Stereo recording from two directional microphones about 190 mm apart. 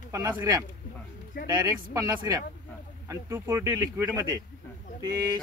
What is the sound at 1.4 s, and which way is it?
Speech, 20° right (ahead or behind).